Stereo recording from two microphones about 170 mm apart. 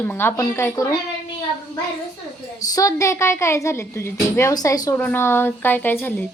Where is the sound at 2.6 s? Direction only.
20° left (ahead or behind).